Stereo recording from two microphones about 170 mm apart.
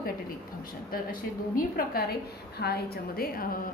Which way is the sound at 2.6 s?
70° left (ahead or behind).